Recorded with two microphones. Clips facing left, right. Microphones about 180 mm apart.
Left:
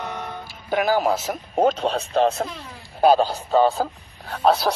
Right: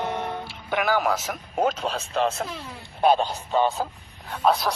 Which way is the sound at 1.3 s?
35° left (ahead or behind).